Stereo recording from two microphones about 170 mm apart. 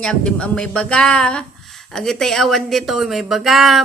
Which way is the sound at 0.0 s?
5° left (ahead or behind).